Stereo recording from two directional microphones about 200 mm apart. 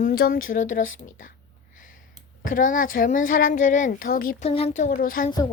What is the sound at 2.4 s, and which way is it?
A child's voice, 40° left (ahead or behind).